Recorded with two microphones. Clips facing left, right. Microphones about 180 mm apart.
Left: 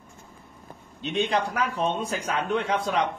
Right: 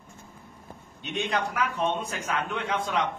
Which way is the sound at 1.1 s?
30° left (ahead or behind).